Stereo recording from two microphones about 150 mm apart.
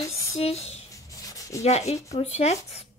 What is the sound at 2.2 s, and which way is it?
Speech, 45° left (ahead or behind).